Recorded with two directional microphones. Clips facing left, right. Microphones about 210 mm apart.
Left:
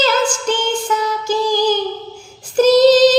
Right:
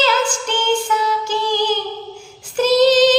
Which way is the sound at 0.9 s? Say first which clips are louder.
Left 1 dB; 40° left (ahead or behind).